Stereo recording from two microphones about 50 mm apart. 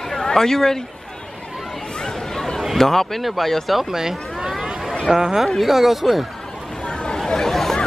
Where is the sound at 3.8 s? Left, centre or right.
Centre.